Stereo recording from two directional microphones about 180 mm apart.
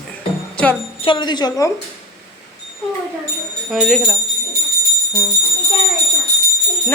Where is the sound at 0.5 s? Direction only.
10° left (ahead or behind).